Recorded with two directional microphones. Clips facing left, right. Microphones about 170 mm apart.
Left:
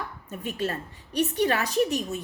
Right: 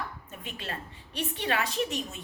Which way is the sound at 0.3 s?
40° left (ahead or behind).